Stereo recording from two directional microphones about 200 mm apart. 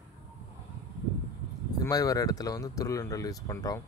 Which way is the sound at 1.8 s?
20° left (ahead or behind).